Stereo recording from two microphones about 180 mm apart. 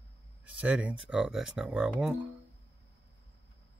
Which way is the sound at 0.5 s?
5° right (ahead or behind).